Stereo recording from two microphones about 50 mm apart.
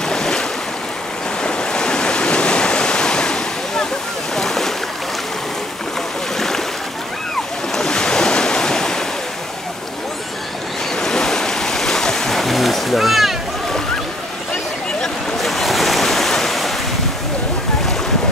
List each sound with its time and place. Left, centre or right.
0.0 s waves: centre
4.4 s boat: centre
6.3 s waves: centre
7.7 s waves: centre
11.0 s waves: centre
15.0 s waves: centre